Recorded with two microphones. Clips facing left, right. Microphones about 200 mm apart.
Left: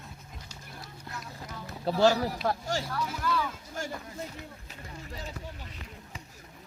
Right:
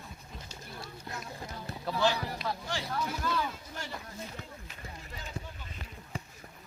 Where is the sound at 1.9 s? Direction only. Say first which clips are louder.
Left 6 dB; 45° left (ahead or behind).